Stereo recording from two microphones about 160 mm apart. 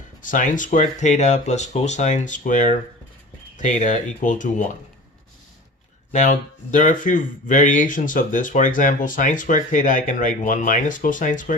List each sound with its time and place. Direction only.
0.2 s speech: 55° left (ahead or behind)
6.1 s speech: 50° left (ahead or behind)